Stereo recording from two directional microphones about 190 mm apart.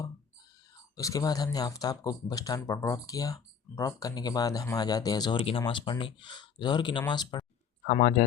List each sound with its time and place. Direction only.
0.9 s speech: 15° left (ahead or behind)
7.9 s speech: 45° left (ahead or behind)